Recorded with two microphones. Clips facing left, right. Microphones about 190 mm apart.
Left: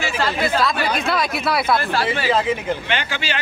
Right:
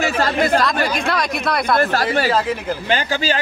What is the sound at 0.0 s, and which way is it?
Speech, 45° right (ahead or behind).